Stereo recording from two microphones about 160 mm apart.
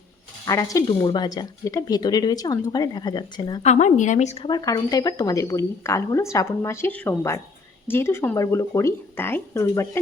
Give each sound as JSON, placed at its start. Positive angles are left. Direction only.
{"t": 0.4, "sound": "a woman's voice", "side_deg": 20}
{"t": 3.6, "sound": "speech", "side_deg": 45}
{"t": 4.4, "sound": "a woman's voice", "side_deg": 25}